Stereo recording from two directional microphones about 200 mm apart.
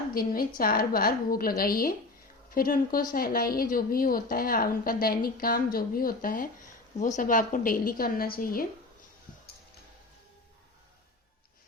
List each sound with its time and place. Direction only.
0.1 s speech: 45° left (ahead or behind)